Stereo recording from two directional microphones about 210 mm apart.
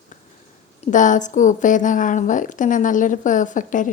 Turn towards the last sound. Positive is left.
turn(degrees=40)  # may be behind; listen again after turning